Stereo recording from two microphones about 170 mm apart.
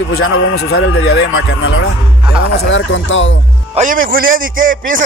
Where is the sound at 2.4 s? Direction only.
90° left.